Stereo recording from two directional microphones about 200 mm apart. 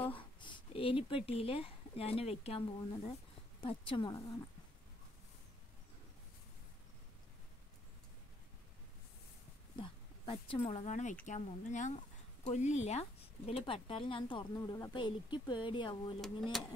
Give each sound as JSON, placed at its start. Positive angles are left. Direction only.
{"t": 0.2, "sound": "speech", "side_deg": 25}
{"t": 9.8, "sound": "speech", "side_deg": 25}